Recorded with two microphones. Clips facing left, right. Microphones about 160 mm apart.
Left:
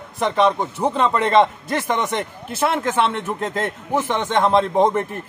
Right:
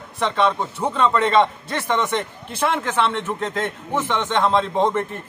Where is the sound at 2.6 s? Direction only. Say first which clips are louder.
Left 2 dB; 10° left (ahead or behind).